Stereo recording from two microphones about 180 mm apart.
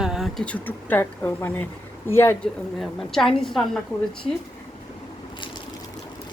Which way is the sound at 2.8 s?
5° left (ahead or behind).